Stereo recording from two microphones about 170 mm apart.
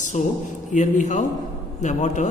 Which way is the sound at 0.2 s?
45° left (ahead or behind).